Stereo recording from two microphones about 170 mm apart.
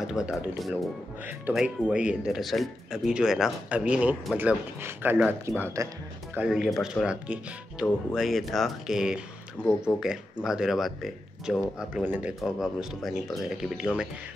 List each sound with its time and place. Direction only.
0.0 s speech: 5° right (ahead or behind); by 5.9 s 20° right (ahead or behind)
6.3 s speech: 5° right (ahead or behind)